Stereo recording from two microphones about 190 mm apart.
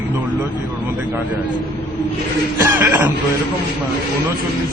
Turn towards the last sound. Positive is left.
turn(degrees=-15)  # may be behind; listen again after turning